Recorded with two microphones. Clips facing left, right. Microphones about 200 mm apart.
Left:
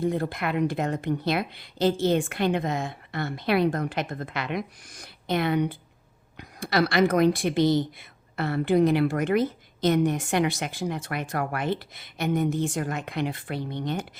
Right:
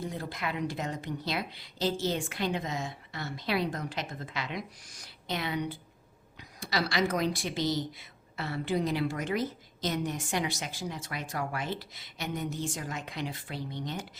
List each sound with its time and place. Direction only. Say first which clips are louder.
0.0 s a woman's voice: left 9 dB; 55° left (ahead or behind)